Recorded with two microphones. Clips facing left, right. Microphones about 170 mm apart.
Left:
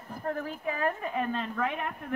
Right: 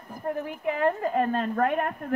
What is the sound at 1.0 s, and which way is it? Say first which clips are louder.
Speech: right 6 dB; 45° right (ahead or behind).